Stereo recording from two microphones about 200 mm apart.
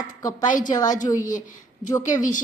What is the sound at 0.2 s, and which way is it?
Speech, 20° left (ahead or behind).